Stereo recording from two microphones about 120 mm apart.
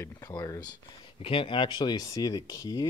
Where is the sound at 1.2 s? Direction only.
45° left (ahead or behind).